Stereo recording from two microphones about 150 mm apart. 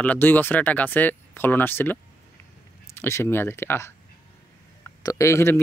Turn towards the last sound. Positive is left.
turn(degrees=20)  # may be behind; listen again after turning